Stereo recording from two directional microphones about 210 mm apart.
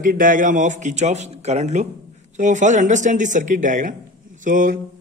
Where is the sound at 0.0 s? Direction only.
40° right (ahead or behind).